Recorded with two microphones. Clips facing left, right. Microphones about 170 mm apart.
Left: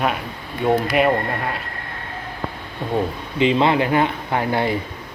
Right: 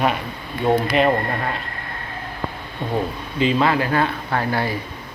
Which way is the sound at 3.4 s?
20° left (ahead or behind).